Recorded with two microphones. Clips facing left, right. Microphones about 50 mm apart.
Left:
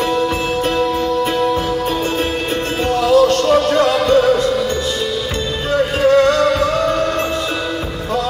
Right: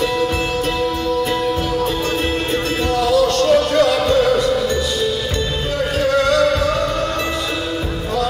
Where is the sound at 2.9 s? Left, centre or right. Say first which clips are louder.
Left 4 dB; left.